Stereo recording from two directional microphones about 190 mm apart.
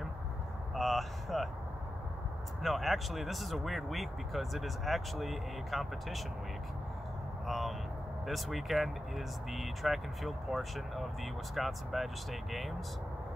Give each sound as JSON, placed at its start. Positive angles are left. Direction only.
{"t": 0.7, "sound": "speech", "side_deg": 0}
{"t": 2.6, "sound": "speech", "side_deg": 0}
{"t": 7.4, "sound": "speech", "side_deg": 0}